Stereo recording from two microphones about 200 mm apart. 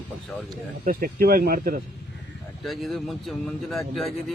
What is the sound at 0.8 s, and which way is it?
Speech, 45° right (ahead or behind).